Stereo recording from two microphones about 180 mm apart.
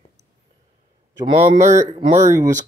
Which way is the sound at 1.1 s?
20° right (ahead or behind).